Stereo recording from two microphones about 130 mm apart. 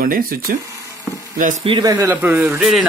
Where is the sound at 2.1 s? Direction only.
15° right (ahead or behind).